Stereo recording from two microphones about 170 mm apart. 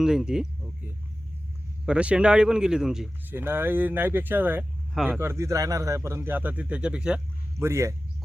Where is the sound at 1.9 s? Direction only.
5° right (ahead or behind).